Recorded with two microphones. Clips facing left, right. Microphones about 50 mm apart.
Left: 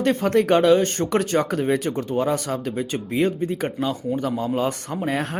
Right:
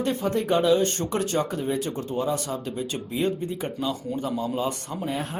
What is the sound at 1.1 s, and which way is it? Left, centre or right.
Speech, left.